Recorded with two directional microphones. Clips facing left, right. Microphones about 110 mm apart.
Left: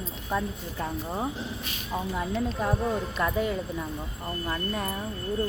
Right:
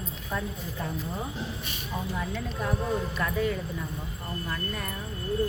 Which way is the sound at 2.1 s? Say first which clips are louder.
Left 4 dB; 20° left (ahead or behind).